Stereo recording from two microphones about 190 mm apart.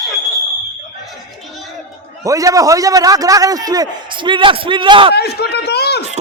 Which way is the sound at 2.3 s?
15° right (ahead or behind).